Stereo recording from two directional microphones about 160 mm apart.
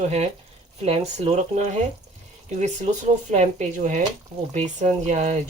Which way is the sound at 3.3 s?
45° right (ahead or behind).